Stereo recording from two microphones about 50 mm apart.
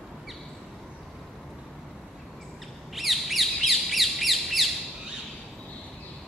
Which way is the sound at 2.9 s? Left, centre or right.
Centre.